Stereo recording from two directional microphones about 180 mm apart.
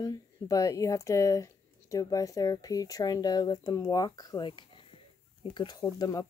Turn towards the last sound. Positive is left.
turn(degrees=20)  # may be behind; listen again after turning